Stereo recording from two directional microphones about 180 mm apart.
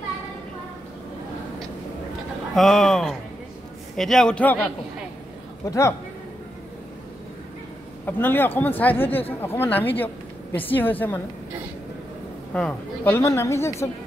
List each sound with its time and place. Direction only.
2.5 s a man's voice: centre (ahead or behind)
5.7 s a woman's voice: 15° left (ahead or behind)
8.0 s a woman's voice: 10° left (ahead or behind)
12.5 s a woman's voice: 10° left (ahead or behind)